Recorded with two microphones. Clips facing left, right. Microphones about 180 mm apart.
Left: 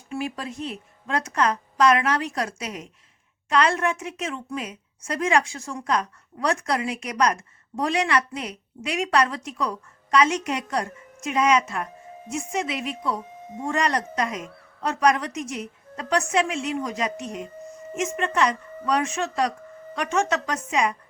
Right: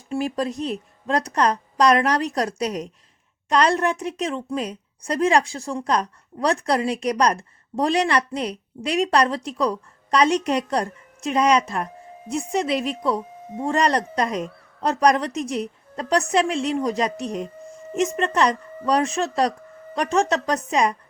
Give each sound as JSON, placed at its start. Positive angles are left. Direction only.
{"t": 0.1, "sound": "a woman's voice", "side_deg": -35}